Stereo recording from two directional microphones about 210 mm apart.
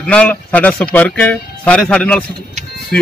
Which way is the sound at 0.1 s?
5° left (ahead or behind).